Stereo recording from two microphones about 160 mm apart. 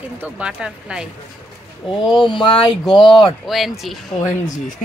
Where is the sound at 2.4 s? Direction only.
30° left (ahead or behind).